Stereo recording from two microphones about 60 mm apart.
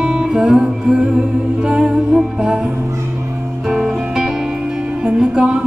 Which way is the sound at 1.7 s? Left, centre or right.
Centre.